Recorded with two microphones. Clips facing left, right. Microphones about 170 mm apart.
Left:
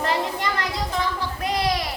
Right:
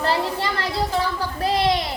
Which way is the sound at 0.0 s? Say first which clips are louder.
Right 2 dB; 30° right (ahead or behind).